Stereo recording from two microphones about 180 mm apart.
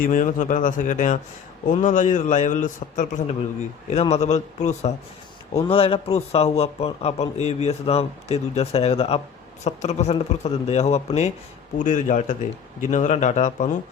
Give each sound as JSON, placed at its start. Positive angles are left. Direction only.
{"t": 0.0, "sound": "a man's voice", "side_deg": 45}